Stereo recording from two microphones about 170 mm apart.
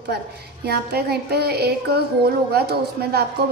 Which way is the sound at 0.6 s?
70° right (ahead or behind).